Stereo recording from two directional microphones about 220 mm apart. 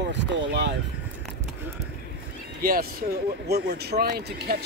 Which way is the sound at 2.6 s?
40° right (ahead or behind).